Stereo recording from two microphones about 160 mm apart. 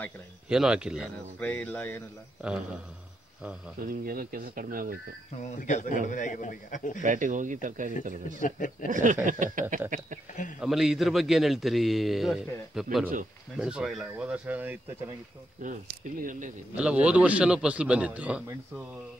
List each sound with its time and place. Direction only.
0.5 s a man's voice: 5° right (ahead or behind)
1.4 s speech: 10° left (ahead or behind)
2.4 s a man's voice: 5° right (ahead or behind)
3.8 s speech: 60° right (ahead or behind)
5.4 s a man's voice: 45° left (ahead or behind)
7.0 s speech: 50° right (ahead or behind)
8.4 s speech: 55° left (ahead or behind)
8.9 s speech: 50° right (ahead or behind)
10.6 s a man's voice: 5° right (ahead or behind)
15.6 s speech: 55° right (ahead or behind)
16.7 s a man's voice: 5° right (ahead or behind)